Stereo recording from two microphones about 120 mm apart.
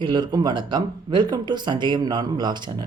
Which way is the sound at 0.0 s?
40° right (ahead or behind).